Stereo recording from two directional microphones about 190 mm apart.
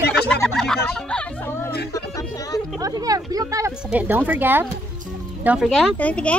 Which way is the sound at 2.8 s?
20° right (ahead or behind).